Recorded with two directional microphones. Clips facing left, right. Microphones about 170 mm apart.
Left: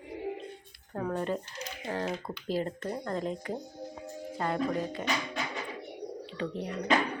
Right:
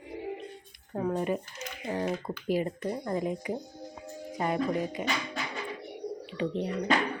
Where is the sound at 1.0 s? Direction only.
15° right (ahead or behind).